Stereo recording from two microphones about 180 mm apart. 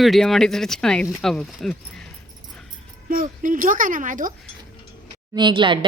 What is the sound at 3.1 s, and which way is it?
A child's voice, 50° right (ahead or behind).